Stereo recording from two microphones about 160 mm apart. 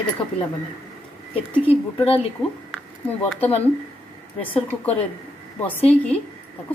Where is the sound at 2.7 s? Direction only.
10° left (ahead or behind).